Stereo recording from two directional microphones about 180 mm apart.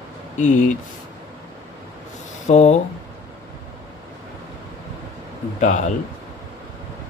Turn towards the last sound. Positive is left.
turn(degrees=45)  # may be behind; listen again after turning